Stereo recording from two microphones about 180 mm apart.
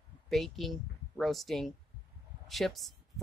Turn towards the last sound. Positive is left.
turn(degrees=0)  # may be behind; listen again after turning